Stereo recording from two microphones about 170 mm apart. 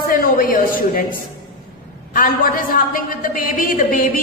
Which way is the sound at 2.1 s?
55° left (ahead or behind).